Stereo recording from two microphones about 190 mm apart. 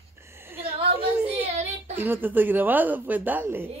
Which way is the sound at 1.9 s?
10° right (ahead or behind).